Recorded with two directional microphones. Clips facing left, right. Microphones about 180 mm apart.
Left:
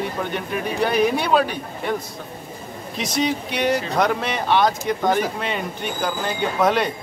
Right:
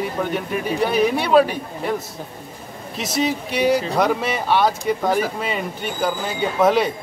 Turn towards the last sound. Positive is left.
turn(degrees=-5)  # may be behind; listen again after turning